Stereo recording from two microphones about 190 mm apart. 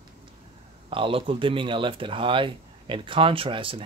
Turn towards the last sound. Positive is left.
turn(degrees=-30)  # may be behind; listen again after turning